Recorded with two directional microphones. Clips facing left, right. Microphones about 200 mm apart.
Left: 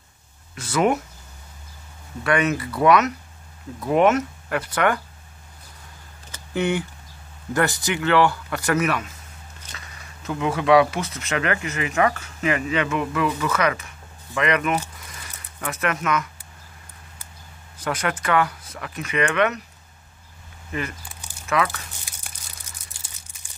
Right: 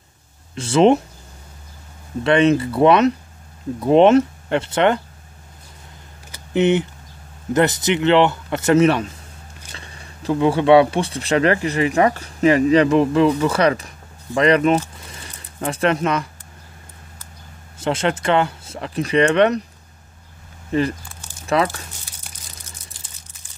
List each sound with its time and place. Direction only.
0.6 s speech: 25° right (ahead or behind)
2.2 s speech: 25° right (ahead or behind)
6.3 s a sound: 20° right (ahead or behind)
7.5 s speech: 20° right (ahead or behind)
15.0 s a sound: 30° right (ahead or behind)
17.7 s speech: 25° right (ahead or behind)
21.5 s speech: 35° right (ahead or behind)